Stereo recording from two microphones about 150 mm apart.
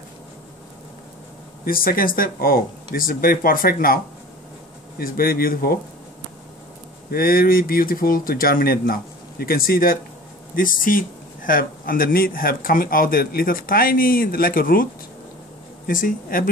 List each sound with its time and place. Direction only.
1.6 s speech: 80° left
7.1 s speech: 80° left
15.9 s speech: 65° left (ahead or behind)